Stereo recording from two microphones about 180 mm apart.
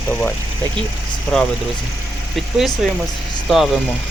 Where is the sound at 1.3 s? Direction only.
Centre (ahead or behind).